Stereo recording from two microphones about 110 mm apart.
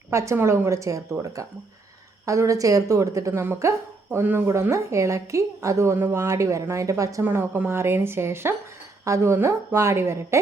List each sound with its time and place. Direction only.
0.1 s speech: 25° right (ahead or behind)
2.2 s speech: 30° right (ahead or behind)
7.3 s speech: 20° right (ahead or behind)